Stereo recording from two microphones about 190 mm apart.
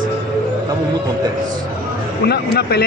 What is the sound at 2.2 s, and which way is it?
Speech, 55° left (ahead or behind).